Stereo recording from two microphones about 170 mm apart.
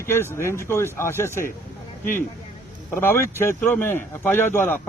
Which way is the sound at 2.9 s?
15° left (ahead or behind).